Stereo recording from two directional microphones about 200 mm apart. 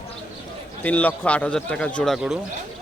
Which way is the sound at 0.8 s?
5° left (ahead or behind).